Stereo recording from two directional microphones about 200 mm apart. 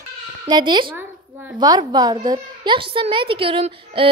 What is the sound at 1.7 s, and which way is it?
A woman's voice, 20° right (ahead or behind).